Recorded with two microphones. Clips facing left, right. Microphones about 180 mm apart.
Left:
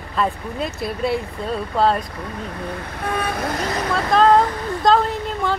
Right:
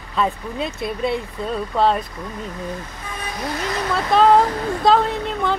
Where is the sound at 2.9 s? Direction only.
60° left (ahead or behind).